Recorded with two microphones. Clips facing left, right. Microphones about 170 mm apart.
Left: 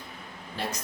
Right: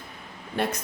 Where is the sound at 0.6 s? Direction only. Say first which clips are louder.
Right 7 dB; 60° right (ahead or behind).